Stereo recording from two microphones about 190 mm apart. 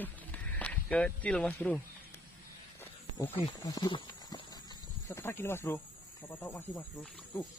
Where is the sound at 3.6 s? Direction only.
20° left (ahead or behind).